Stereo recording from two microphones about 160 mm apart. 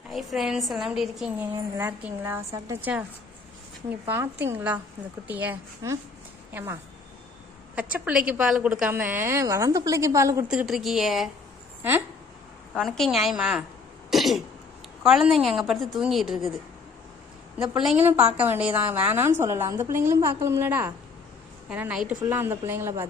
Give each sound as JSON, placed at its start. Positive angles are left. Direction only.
{"t": 0.1, "sound": "a woman's voice", "side_deg": 0}
{"t": 1.8, "sound": "a woman's voice", "side_deg": -15}
{"t": 4.1, "sound": "a woman's voice", "side_deg": -15}
{"t": 10.5, "sound": "a woman's voice", "side_deg": -5}
{"t": 12.7, "sound": "a woman's voice", "side_deg": 0}
{"t": 14.1, "sound": "cough", "side_deg": 0}
{"t": 15.0, "sound": "a woman's voice", "side_deg": 0}
{"t": 17.6, "sound": "a woman's voice", "side_deg": -5}